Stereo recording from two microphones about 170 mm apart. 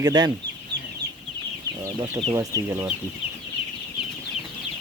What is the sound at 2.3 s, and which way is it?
Speech, 20° right (ahead or behind).